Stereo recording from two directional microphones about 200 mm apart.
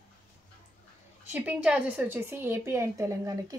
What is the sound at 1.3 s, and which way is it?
A woman's voice, 5° right (ahead or behind).